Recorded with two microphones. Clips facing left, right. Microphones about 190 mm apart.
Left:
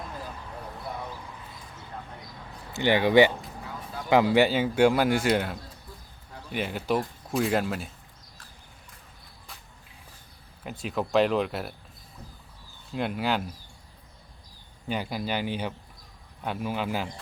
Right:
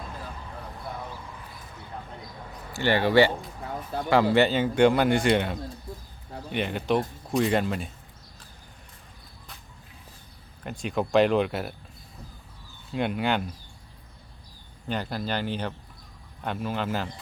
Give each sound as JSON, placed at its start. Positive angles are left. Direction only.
{"t": 2.7, "sound": "speech", "side_deg": 15}
{"t": 4.4, "sound": "speech", "side_deg": 10}
{"t": 10.6, "sound": "speech", "side_deg": 0}
{"t": 12.9, "sound": "speech", "side_deg": 0}
{"t": 14.8, "sound": "speech", "side_deg": 10}